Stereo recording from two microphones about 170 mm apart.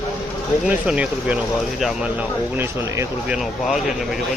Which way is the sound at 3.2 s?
5° right (ahead or behind).